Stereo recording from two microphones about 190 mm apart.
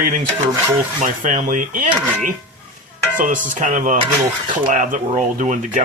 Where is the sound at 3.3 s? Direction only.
40° right (ahead or behind).